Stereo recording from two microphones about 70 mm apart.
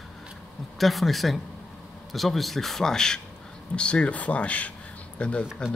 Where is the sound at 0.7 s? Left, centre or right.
Centre.